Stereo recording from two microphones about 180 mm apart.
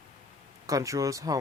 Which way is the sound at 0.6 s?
20° right (ahead or behind).